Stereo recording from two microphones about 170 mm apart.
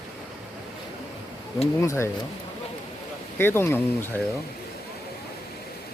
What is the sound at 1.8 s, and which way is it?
Speech, 15° left (ahead or behind).